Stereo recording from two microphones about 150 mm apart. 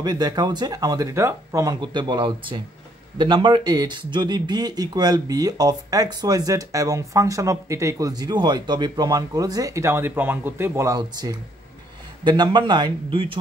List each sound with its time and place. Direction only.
0.0 s speech: 25° right (ahead or behind)